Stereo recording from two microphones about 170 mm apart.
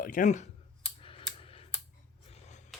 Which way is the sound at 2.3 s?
40° left (ahead or behind).